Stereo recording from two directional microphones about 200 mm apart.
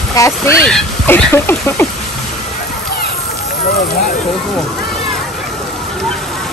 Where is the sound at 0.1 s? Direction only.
15° left (ahead or behind).